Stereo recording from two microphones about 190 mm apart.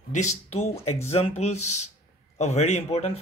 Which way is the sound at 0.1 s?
40° left (ahead or behind).